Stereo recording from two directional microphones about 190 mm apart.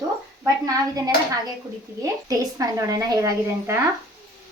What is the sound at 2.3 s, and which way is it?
Speech, 15° right (ahead or behind).